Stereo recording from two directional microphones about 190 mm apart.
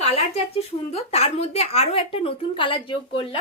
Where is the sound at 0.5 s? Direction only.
35° left (ahead or behind).